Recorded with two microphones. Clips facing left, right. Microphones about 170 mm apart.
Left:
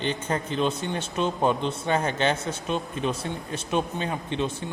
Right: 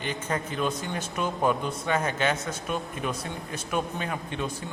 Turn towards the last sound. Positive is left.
turn(degrees=25)  # may be behind; listen again after turning